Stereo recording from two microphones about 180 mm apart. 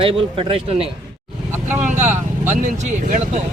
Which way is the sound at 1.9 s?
45° right (ahead or behind).